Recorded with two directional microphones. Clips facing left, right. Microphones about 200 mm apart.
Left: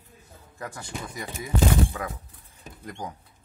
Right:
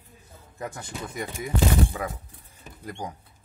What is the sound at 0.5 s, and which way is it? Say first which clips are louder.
Speech: right 1 dB; 20° right (ahead or behind).